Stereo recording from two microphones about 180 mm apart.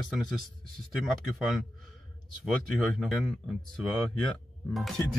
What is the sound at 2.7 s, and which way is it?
Speech, centre (ahead or behind).